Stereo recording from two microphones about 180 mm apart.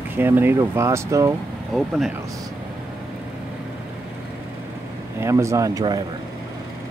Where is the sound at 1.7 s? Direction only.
Centre (ahead or behind).